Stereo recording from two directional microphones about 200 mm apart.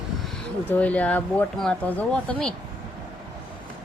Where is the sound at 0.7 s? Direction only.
5° left (ahead or behind).